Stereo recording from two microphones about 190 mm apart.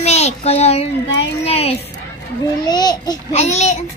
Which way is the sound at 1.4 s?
30° left (ahead or behind).